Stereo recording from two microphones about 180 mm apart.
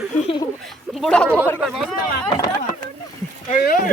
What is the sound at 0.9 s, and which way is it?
Speech, 5° left (ahead or behind).